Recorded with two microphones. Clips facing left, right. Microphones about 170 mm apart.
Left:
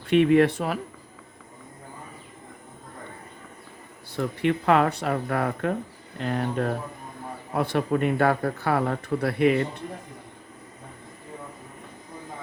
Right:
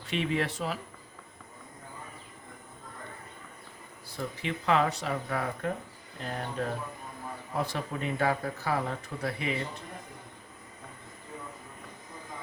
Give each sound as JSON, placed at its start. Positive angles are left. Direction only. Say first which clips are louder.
{"t": 0.1, "sound": "speech", "louder": "left 12 dB", "side_deg": 55}
{"t": 4.2, "sound": "speech", "louder": "left 10 dB", "side_deg": 60}